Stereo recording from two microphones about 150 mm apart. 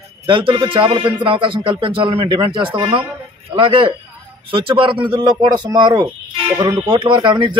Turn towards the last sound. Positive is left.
turn(degrees=-30)  # may be behind; listen again after turning